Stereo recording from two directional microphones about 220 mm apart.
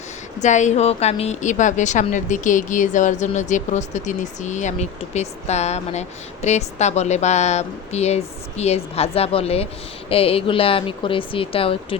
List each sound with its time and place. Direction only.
0.3 s speech: 35° left (ahead or behind)